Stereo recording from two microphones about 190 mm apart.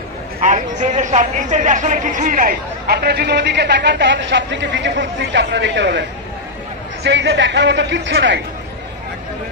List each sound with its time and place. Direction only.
0.4 s speech: 40° right (ahead or behind); by 8.4 s 70° right (ahead or behind)